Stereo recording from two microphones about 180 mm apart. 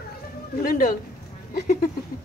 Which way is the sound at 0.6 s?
50° left (ahead or behind).